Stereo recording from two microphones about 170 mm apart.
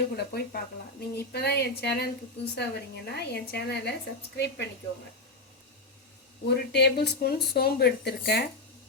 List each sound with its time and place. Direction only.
0.2 s speech: 70° left (ahead or behind)
6.5 s speech: 75° left (ahead or behind)